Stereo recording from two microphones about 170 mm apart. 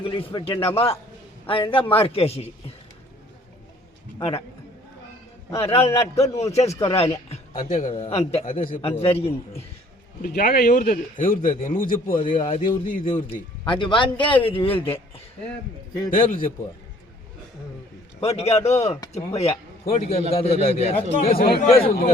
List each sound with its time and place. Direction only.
0.0 s a man's voice: 30° left (ahead or behind)
4.2 s a man's voice: 35° left (ahead or behind)
5.5 s a man's voice: 35° left (ahead or behind)
10.2 s a man's voice: 60° left (ahead or behind)
12.3 s a man's voice: 35° left (ahead or behind)
12.9 s a man's voice: 50° left (ahead or behind)
13.3 s a man's voice: 30° left (ahead or behind)
16.0 s a man's voice: 55° left (ahead or behind)
18.2 s a man's voice: 40° left (ahead or behind)
21.3 s a man's voice: 65° left (ahead or behind)